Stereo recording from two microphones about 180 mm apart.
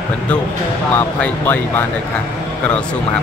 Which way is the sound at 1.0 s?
10° left (ahead or behind).